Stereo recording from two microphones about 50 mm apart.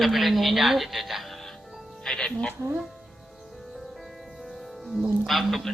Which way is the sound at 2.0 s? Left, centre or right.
Centre.